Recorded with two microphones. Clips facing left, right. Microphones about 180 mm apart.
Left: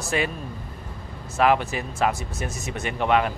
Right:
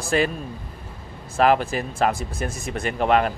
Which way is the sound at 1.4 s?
35° right (ahead or behind).